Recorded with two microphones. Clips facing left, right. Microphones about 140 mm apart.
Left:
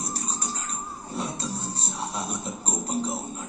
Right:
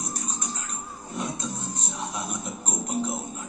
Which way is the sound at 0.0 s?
30° left (ahead or behind).